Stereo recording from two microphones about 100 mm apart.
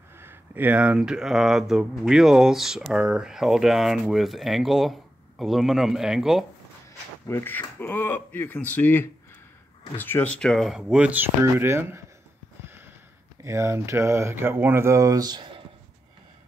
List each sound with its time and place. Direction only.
0.1 s speech: 20° right (ahead or behind); by 6.4 s 5° right (ahead or behind)
7.2 s speech: 20° left (ahead or behind)
10.4 s speech: 5° left (ahead or behind); by 12.0 s 25° right (ahead or behind)
13.4 s speech: 30° right (ahead or behind)